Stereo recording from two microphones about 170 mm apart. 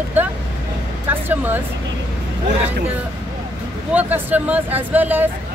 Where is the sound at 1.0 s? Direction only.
10° right (ahead or behind).